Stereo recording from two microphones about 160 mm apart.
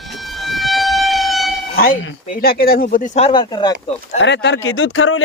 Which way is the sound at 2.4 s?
70° left (ahead or behind).